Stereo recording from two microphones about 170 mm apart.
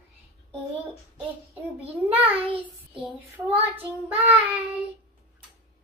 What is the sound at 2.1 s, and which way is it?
Child singing, 10° right (ahead or behind).